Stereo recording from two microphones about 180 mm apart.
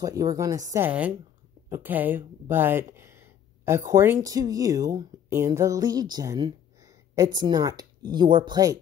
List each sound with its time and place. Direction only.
0.0 s speech: 20° right (ahead or behind)